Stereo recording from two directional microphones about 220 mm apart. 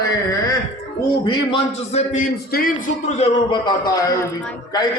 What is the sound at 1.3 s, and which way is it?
Speech, 25° left (ahead or behind).